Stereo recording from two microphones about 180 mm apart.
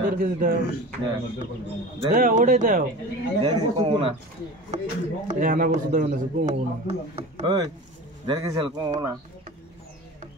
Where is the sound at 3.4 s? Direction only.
30° right (ahead or behind).